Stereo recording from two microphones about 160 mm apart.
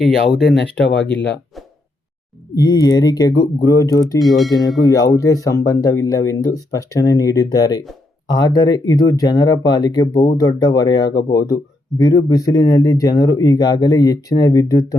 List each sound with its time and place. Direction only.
0.0 s speech: 5° left (ahead or behind)
2.6 s speech: 25° left (ahead or behind)
4.2 s speech: centre (ahead or behind)
4.8 s speech: 20° left (ahead or behind)